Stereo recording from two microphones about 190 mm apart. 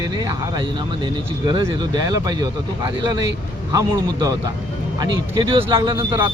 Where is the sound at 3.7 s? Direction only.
20° right (ahead or behind).